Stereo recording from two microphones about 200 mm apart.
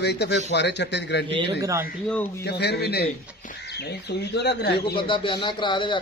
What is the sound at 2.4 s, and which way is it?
Speech, 55° left (ahead or behind).